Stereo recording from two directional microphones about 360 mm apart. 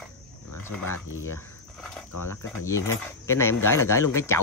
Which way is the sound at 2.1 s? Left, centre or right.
Left.